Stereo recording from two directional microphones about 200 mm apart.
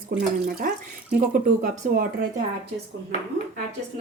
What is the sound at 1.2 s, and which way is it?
Speech, 40° right (ahead or behind).